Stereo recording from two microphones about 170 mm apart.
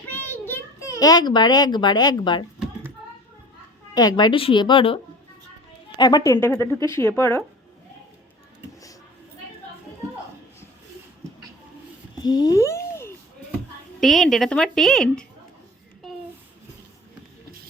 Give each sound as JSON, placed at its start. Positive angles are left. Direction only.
{"t": 0.1, "sound": "a child's voice", "side_deg": 10}
{"t": 3.9, "sound": "a woman's voice", "side_deg": 25}
{"t": 6.0, "sound": "a woman's voice", "side_deg": 25}
{"t": 12.2, "sound": "babbling", "side_deg": 25}
{"t": 14.0, "sound": "a woman's voice", "side_deg": 0}